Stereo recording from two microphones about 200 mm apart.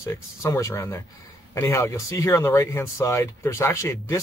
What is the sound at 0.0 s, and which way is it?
Speech, 15° left (ahead or behind).